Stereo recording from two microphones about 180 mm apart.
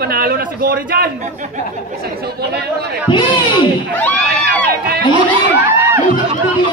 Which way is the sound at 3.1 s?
25° left (ahead or behind).